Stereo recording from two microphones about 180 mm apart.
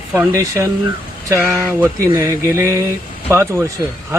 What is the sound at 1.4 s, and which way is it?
Speech, 10° left (ahead or behind).